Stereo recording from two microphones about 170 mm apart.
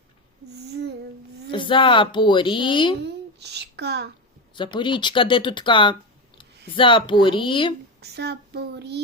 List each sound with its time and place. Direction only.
0.5 s child singing: 80° right
1.5 s speech: 30° left (ahead or behind)
3.0 s a child's voice: 80° right
4.5 s speech: 30° left (ahead or behind)
8.0 s child singing: 75° right (ahead or behind)